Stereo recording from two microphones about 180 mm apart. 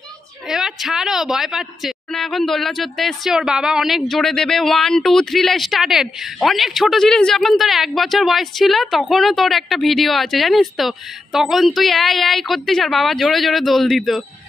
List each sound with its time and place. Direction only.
0.5 s a woman's voice: centre (ahead or behind)